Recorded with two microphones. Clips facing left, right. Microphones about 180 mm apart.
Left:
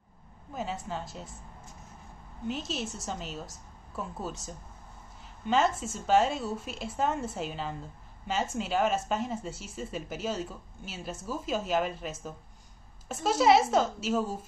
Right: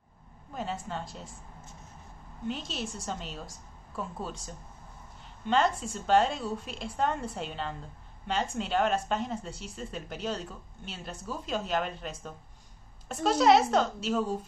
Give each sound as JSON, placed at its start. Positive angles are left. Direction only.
{"t": 0.5, "sound": "speech", "side_deg": 0}
{"t": 2.4, "sound": "a woman's voice", "side_deg": 0}